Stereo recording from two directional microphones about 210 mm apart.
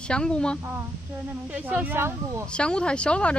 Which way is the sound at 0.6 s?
10° right (ahead or behind).